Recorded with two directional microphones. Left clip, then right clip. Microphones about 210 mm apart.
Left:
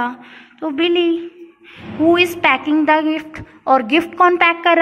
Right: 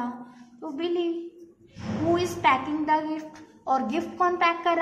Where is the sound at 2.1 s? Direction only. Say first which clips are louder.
Left 8 dB; 45° left (ahead or behind).